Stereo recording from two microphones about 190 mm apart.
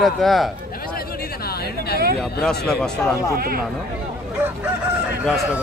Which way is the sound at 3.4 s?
50° right (ahead or behind).